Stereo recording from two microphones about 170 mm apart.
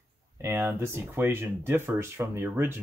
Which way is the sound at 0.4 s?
15° right (ahead or behind).